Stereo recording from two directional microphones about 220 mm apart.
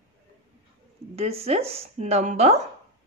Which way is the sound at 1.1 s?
30° right (ahead or behind).